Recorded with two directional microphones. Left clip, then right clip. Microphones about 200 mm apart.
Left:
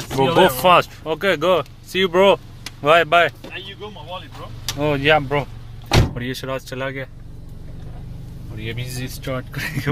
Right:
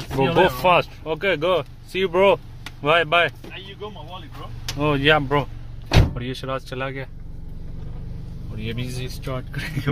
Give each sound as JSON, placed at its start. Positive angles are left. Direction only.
{"t": 0.2, "sound": "speech", "side_deg": 5}
{"t": 3.5, "sound": "vehicle", "side_deg": 20}
{"t": 4.7, "sound": "speech", "side_deg": -5}
{"t": 6.1, "sound": "speech", "side_deg": 5}
{"t": 8.5, "sound": "speech", "side_deg": 0}